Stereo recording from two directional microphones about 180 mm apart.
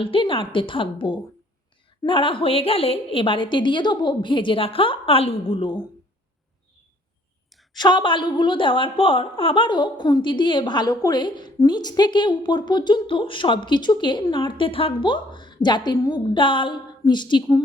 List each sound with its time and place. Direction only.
0.0 s a woman's voice: 30° left (ahead or behind)
7.8 s a woman's voice: 25° left (ahead or behind)